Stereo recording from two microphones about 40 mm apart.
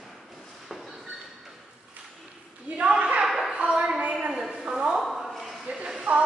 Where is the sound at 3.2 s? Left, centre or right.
Centre.